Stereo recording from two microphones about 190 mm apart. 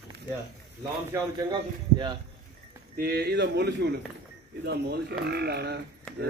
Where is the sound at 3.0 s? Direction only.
55° right (ahead or behind).